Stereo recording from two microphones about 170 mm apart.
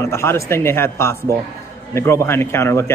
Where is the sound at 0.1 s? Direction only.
15° left (ahead or behind).